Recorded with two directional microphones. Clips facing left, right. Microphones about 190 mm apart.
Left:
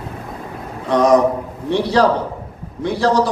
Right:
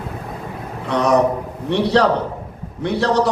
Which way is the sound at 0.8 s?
65° right (ahead or behind).